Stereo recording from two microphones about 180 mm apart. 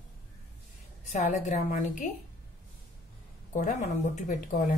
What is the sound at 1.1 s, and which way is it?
Speech, 40° left (ahead or behind).